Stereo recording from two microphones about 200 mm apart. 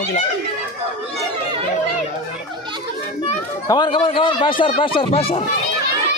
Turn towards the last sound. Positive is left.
turn(degrees=25)  # may be behind; listen again after turning